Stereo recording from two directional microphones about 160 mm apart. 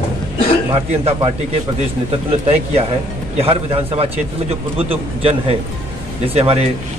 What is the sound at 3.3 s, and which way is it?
A man's voice, 40° right (ahead or behind).